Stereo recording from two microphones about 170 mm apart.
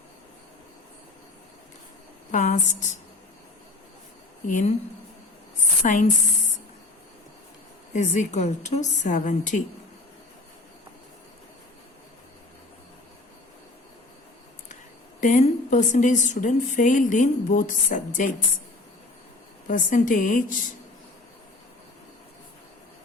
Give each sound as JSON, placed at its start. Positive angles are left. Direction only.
{"t": 2.3, "sound": "a woman's voice", "side_deg": 45}
{"t": 4.4, "sound": "a woman's voice", "side_deg": 45}
{"t": 5.8, "sound": "a woman's voice", "side_deg": 50}
{"t": 7.9, "sound": "a woman's voice", "side_deg": 45}
{"t": 15.2, "sound": "a woman's voice", "side_deg": 45}
{"t": 19.6, "sound": "a woman's voice", "side_deg": 50}